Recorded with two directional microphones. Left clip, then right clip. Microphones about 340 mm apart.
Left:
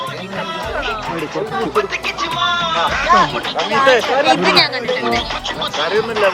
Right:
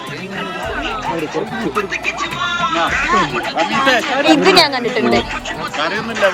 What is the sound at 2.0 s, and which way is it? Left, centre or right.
Speech, left.